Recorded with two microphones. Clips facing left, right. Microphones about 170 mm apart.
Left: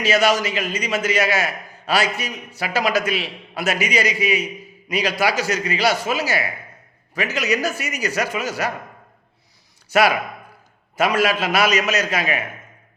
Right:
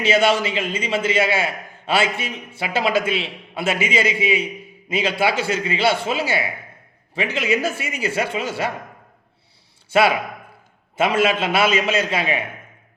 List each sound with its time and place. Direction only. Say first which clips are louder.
0.0 s a man's voice: right 1 dB; 25° right (ahead or behind)
9.9 s a man's voice: even; 25° right (ahead or behind)